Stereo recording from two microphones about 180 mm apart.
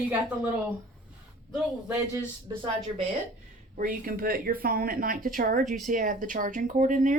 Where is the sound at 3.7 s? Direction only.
50° right (ahead or behind).